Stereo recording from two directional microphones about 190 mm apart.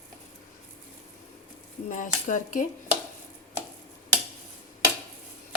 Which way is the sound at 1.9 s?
45° left (ahead or behind).